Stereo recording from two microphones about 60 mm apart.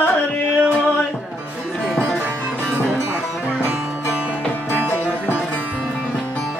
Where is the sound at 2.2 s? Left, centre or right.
Right.